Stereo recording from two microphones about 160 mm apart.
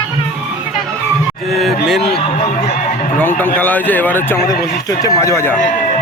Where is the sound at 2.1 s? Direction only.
40° left (ahead or behind).